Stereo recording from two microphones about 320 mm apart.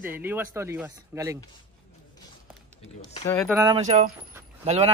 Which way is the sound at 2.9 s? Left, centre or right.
Centre.